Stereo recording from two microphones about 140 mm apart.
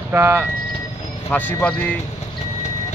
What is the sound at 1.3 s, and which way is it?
Speech, 15° left (ahead or behind).